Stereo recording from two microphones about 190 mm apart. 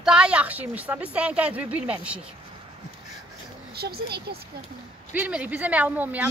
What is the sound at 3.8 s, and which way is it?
Speech, 55° right (ahead or behind).